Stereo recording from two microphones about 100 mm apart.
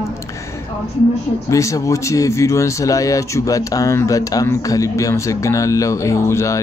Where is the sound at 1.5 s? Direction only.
30° left (ahead or behind).